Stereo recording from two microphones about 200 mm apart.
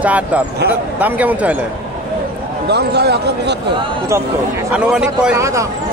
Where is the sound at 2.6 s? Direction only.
55° right (ahead or behind).